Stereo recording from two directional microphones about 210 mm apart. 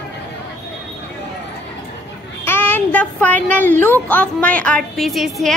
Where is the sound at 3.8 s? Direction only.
10° left (ahead or behind).